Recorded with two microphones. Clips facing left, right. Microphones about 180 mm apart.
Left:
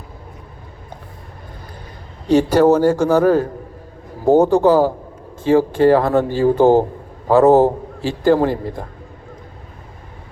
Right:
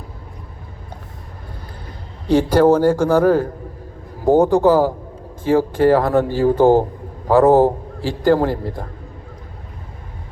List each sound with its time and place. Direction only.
2.3 s a man's voice: 10° left (ahead or behind)
2.6 s speech: 10° right (ahead or behind)
4.3 s speech: 15° right (ahead or behind)
4.5 s a man's voice: 15° left (ahead or behind)